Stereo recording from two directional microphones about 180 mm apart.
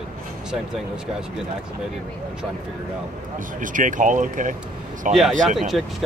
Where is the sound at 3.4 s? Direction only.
45° right (ahead or behind).